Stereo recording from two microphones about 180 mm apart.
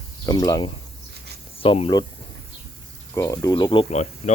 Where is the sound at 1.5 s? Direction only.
30° left (ahead or behind).